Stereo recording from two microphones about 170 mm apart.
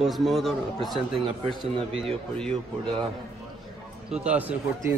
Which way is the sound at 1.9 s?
35° right (ahead or behind).